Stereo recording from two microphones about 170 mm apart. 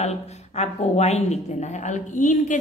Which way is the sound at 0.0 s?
40° left (ahead or behind).